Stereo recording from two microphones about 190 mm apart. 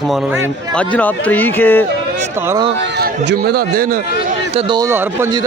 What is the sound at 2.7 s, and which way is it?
Speech, 70° right (ahead or behind).